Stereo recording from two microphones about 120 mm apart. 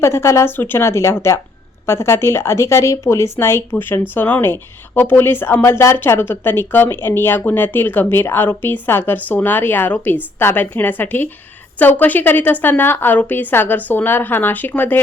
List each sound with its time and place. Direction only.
0.0 s a woman's voice: 25° left (ahead or behind)